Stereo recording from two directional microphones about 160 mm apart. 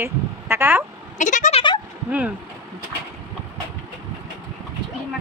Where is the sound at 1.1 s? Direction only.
50° left (ahead or behind).